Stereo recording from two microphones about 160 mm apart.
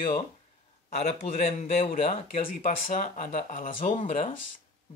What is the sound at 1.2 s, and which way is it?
A man's voice, 40° left (ahead or behind).